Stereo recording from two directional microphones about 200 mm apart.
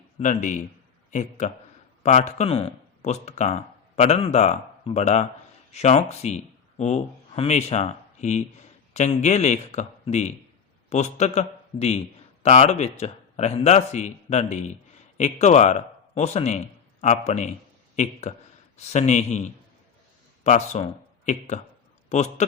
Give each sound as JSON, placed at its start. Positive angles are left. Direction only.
{"t": 0.2, "sound": "a man's voice", "side_deg": 40}
{"t": 20.4, "sound": "a man's voice", "side_deg": 35}